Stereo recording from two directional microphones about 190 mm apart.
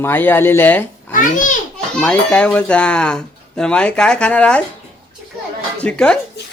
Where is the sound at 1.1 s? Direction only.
45° left (ahead or behind).